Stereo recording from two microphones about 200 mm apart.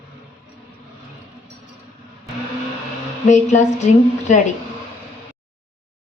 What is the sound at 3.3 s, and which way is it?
A woman's voice, 35° left (ahead or behind).